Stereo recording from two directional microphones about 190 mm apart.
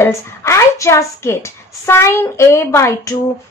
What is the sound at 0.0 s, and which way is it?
A woman's voice, 15° left (ahead or behind).